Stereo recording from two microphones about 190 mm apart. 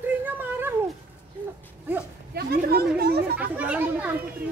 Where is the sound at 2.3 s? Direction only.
55° right (ahead or behind).